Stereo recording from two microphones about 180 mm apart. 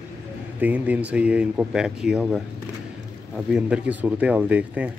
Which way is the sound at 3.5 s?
5° right (ahead or behind).